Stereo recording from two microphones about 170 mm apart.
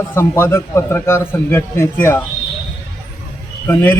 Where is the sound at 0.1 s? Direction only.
15° left (ahead or behind).